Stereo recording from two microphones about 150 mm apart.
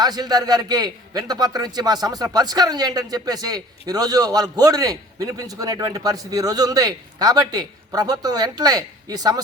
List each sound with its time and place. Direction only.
0.0 s a man's voice: 25° right (ahead or behind)